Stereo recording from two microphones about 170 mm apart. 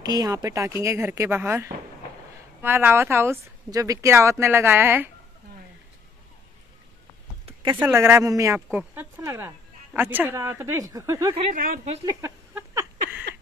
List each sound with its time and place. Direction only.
0.0 s speech: 25° right (ahead or behind)
7.7 s speech: 15° right (ahead or behind)
11.5 s a woman's voice: 55° right (ahead or behind)
12.1 s a sound: 15° right (ahead or behind)